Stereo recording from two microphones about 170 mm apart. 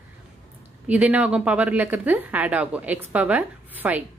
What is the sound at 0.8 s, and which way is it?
A woman's voice, 10° right (ahead or behind).